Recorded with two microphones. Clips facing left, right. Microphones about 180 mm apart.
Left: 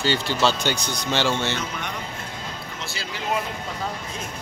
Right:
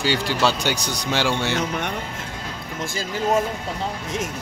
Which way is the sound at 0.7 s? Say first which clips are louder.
Right 1 dB; 35° right (ahead or behind).